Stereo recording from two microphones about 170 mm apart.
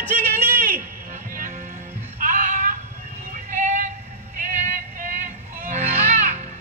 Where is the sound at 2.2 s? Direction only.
50° right (ahead or behind).